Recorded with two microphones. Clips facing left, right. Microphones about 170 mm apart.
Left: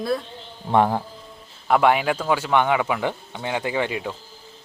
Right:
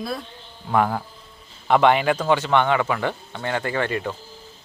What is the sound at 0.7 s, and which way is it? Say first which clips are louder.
Speech: left 2 dB; 20° left (ahead or behind).